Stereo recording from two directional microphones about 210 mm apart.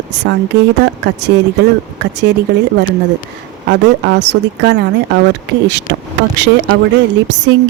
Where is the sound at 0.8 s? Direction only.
55° right (ahead or behind).